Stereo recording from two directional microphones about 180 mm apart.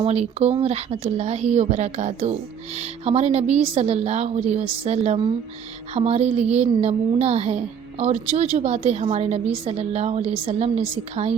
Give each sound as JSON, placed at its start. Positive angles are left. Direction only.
{"t": 0.0, "sound": "a woman's voice", "side_deg": -35}